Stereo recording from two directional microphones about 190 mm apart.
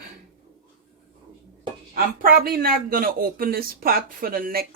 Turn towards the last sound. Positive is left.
turn(degrees=-50)  # may be behind; listen again after turning